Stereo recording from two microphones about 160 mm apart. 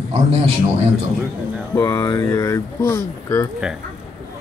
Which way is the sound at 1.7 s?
20° left (ahead or behind).